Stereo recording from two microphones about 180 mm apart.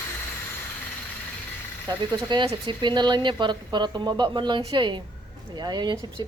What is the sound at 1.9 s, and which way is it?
Speech, 25° right (ahead or behind).